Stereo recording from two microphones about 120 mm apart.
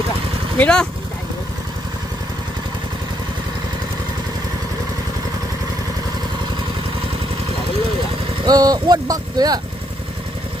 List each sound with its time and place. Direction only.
0.6 s speech: 5° left (ahead or behind)
8.4 s speech: 30° right (ahead or behind)